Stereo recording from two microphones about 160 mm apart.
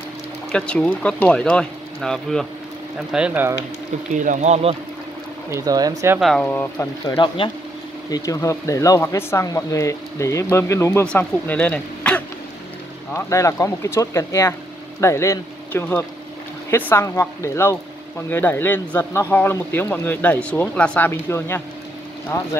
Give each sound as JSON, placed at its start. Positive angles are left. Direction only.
{"t": 0.5, "sound": "speech", "side_deg": 5}
{"t": 4.1, "sound": "speech", "side_deg": -50}
{"t": 5.5, "sound": "speech", "side_deg": -25}
{"t": 6.1, "sound": "speech", "side_deg": 0}
{"t": 7.2, "sound": "speech", "side_deg": 30}
{"t": 13.1, "sound": "speech", "side_deg": 20}